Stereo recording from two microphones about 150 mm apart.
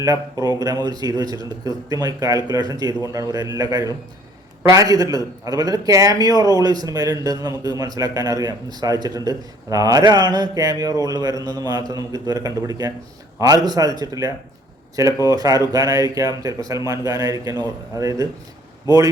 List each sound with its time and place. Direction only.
0.0 s a man's voice: 20° right (ahead or behind)